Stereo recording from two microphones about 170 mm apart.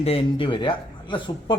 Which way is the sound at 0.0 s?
35° left (ahead or behind).